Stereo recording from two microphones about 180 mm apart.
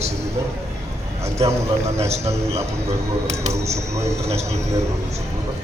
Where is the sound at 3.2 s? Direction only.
35° right (ahead or behind).